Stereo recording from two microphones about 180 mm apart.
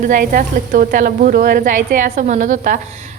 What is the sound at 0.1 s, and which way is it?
A woman's voice, 50° right (ahead or behind).